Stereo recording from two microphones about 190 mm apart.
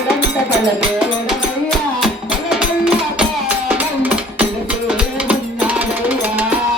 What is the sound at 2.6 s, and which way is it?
Music, 5° right (ahead or behind).